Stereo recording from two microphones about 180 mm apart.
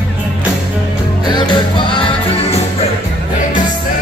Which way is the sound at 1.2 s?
25° left (ahead or behind).